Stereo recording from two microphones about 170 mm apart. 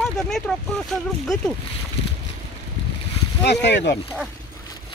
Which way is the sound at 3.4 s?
85° left.